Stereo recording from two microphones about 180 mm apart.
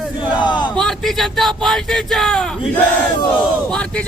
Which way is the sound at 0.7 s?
Centre (ahead or behind).